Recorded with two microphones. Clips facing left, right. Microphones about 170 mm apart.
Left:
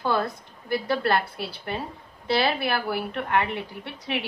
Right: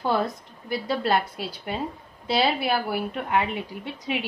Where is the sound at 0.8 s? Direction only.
15° right (ahead or behind).